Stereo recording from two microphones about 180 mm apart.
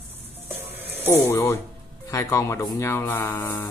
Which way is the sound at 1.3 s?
15° left (ahead or behind).